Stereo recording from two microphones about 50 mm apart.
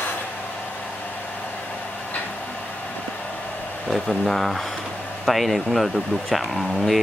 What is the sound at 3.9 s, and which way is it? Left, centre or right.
Speech, centre.